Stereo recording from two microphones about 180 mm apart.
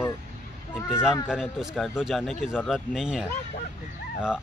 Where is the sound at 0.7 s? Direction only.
10° left (ahead or behind).